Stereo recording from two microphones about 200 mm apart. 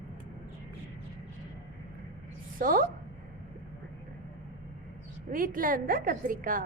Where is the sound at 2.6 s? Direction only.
45° right (ahead or behind).